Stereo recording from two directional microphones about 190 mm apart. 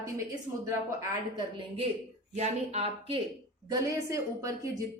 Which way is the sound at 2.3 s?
35° right (ahead or behind).